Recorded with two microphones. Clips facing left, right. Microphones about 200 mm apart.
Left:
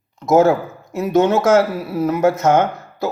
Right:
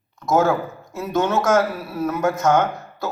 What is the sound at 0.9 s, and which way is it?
Speech, 20° left (ahead or behind).